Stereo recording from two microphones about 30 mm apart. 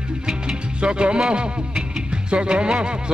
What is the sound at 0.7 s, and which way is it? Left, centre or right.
Music, right.